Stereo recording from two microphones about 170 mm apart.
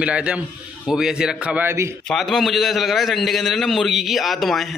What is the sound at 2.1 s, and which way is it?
A man's voice, centre (ahead or behind).